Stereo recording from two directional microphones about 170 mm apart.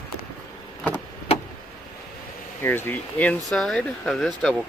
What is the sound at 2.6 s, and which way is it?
Speech, 10° left (ahead or behind).